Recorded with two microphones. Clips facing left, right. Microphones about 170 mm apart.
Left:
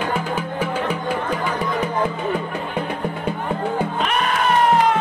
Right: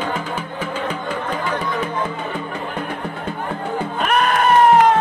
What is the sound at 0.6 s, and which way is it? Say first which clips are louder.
Music: left 2 dB; 10° left (ahead or behind).